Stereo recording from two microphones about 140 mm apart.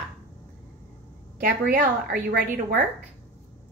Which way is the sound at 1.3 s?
85° right.